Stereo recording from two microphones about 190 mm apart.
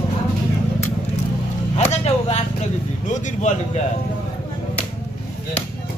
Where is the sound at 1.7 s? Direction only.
35° left (ahead or behind).